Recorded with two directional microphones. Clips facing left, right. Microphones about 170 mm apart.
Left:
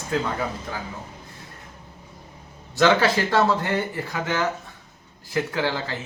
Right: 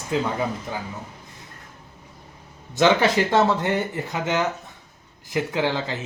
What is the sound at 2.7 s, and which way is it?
Speech, 20° right (ahead or behind).